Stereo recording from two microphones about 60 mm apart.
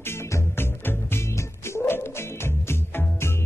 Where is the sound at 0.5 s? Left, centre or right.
Left.